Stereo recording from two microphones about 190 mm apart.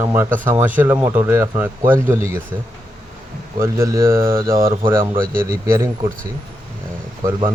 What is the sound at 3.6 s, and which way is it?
Speech, 15° right (ahead or behind).